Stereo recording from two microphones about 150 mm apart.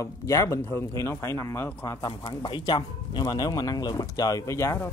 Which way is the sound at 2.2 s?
30° left (ahead or behind).